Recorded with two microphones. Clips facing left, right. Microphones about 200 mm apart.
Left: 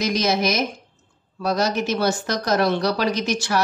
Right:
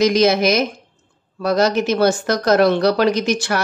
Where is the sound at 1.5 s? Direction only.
65° right (ahead or behind).